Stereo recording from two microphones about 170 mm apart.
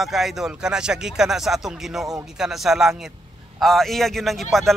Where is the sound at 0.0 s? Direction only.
Centre (ahead or behind).